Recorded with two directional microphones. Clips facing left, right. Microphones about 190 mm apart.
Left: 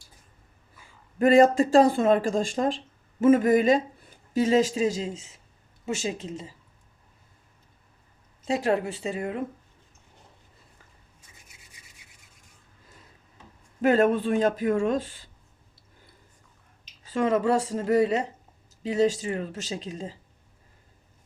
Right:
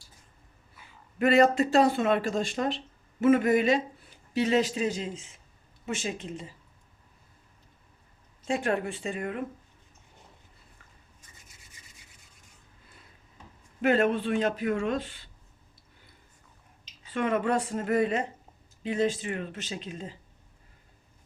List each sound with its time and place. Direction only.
1.2 s a woman's voice: 40° left (ahead or behind); by 6.3 s 25° left (ahead or behind)
9.1 s a woman's voice: 25° left (ahead or behind)
13.8 s speech: 45° left (ahead or behind)
17.0 s speech: 40° left (ahead or behind)